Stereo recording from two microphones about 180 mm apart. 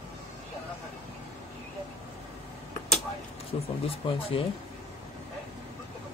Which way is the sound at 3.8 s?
30° left (ahead or behind).